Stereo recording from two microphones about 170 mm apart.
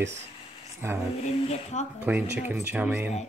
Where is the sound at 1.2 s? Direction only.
40° left (ahead or behind).